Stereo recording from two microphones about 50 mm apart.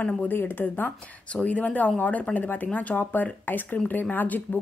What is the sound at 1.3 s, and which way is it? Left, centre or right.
Speech, left.